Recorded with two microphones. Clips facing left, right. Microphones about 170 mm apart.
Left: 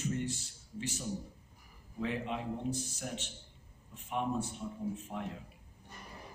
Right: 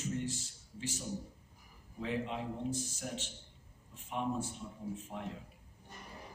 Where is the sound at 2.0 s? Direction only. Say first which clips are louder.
Left 1 dB; 60° left (ahead or behind).